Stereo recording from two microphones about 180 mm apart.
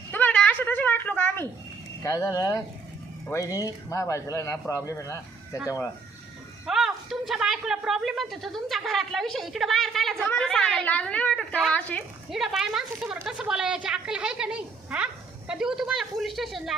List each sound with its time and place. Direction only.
0.1 s a sound: 10° left (ahead or behind)
2.0 s a woman's voice: 20° left (ahead or behind)
5.5 s a woman's voice: 10° right (ahead or behind); by 12.0 s 10° left (ahead or behind)
12.3 s a woman's voice: centre (ahead or behind)